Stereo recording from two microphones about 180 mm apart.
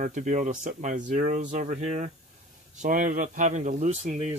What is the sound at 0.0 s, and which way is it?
Speech, 45° right (ahead or behind).